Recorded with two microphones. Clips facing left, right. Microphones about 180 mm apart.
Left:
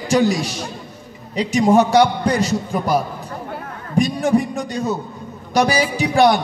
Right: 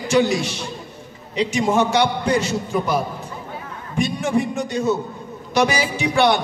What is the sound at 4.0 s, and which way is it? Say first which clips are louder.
A man's voice: left 4 dB; 35° left (ahead or behind).